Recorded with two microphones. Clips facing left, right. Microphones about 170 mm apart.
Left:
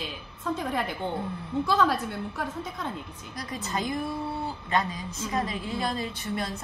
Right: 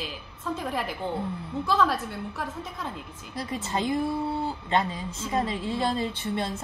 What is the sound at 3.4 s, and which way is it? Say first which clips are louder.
A woman's voice: right 3 dB; 25° right (ahead or behind).